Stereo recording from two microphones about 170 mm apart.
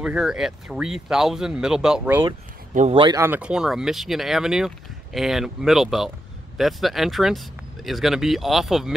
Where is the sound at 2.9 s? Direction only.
30° right (ahead or behind).